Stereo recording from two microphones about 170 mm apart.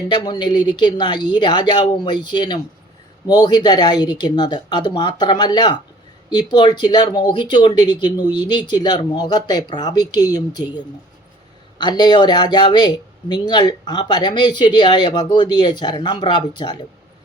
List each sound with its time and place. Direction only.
0.1 s speech: 25° left (ahead or behind)